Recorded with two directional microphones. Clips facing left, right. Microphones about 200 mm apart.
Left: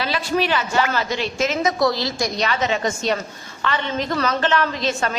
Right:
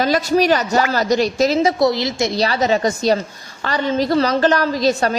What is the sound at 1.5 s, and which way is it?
A woman's voice, 25° right (ahead or behind).